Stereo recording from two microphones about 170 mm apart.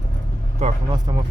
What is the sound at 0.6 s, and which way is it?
Speech, 40° right (ahead or behind).